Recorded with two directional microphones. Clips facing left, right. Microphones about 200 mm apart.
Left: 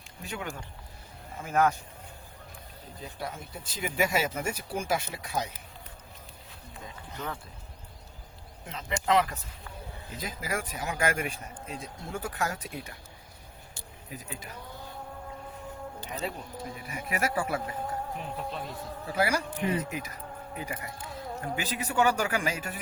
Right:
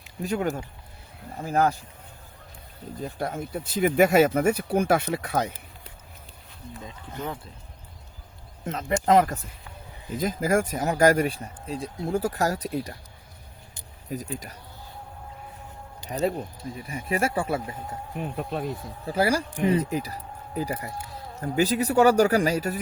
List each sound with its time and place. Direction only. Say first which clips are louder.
0.2 s speech: right 11 dB; 40° right (ahead or behind)
3.0 s speech: right 8 dB; 50° right (ahead or behind)
8.6 s speech: right 7 dB; 45° right (ahead or behind)
14.1 s speech: right 9 dB; 40° right (ahead or behind)
16.0 s speech: right 11 dB; 35° right (ahead or behind)
19.0 s speech: right 5 dB; 30° right (ahead or behind)